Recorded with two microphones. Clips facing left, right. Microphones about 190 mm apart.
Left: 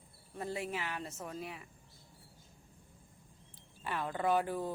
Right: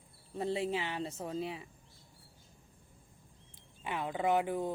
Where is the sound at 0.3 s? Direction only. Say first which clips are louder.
Right 5 dB; 25° right (ahead or behind).